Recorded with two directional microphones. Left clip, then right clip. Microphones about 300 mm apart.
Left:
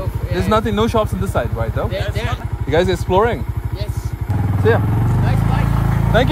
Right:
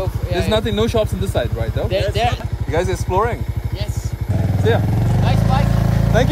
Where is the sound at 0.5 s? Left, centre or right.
Centre.